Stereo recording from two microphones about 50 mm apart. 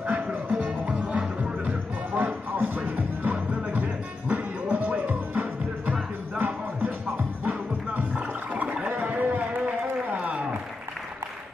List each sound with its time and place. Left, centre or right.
0.0 s music: right
1.7 s music: right
8.8 s a sound: right